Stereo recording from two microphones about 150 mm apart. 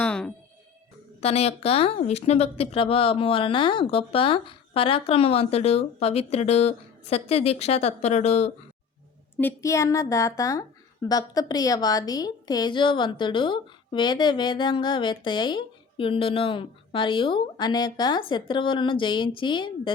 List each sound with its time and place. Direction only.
0.0 s music: 10° left (ahead or behind)
1.2 s speech: 45° left (ahead or behind)
9.4 s a woman's voice: 15° left (ahead or behind); by 19.9 s 30° left (ahead or behind)